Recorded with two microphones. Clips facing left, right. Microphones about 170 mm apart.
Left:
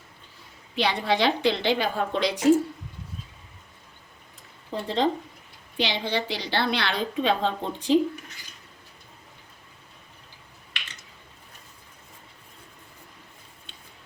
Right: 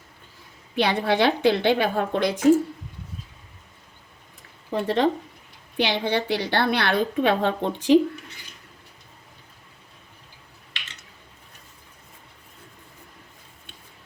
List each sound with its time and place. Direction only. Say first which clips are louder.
0.8 s a woman's voice: right 3 dB; 55° right (ahead or behind)
4.7 s a woman's voice: right 3 dB; 65° right (ahead or behind)